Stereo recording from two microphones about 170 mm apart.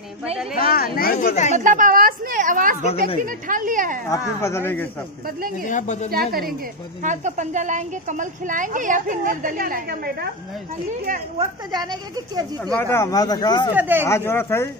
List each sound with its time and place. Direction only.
0.6 s speech: 60° left (ahead or behind); by 1.6 s 45° left (ahead or behind)
1.6 s speech: 50° right (ahead or behind)
4.4 s speech: 15° left (ahead or behind)
5.7 s a woman's voice: 45° left (ahead or behind)
6.0 s a woman's voice: 60° right (ahead or behind)
7.0 s speech: 45° right (ahead or behind)
11.9 s speech: 25° right (ahead or behind)
12.7 s speech: 15° left (ahead or behind)
13.7 s speech: 10° right (ahead or behind)
14.0 s speech: 15° left (ahead or behind)